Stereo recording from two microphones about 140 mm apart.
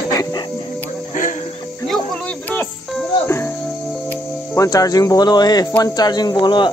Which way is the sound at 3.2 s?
15° left (ahead or behind).